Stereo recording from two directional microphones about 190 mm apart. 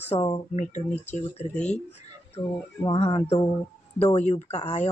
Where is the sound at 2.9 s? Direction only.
30° left (ahead or behind).